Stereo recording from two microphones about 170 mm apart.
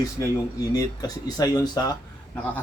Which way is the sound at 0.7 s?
20° left (ahead or behind).